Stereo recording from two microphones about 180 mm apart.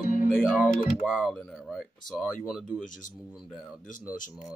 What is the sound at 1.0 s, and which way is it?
Speech, 5° right (ahead or behind).